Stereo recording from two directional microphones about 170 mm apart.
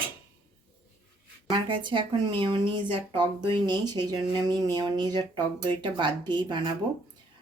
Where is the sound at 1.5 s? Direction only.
30° right (ahead or behind).